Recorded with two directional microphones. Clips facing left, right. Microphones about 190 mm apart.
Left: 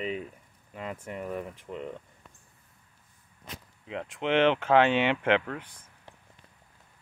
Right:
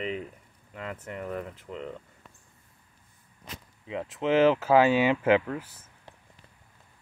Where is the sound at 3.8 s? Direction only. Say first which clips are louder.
Right 3 dB; centre (ahead or behind).